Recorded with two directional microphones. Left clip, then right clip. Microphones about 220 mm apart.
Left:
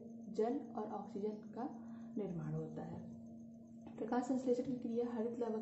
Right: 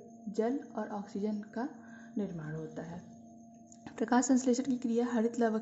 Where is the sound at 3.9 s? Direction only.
50° right (ahead or behind).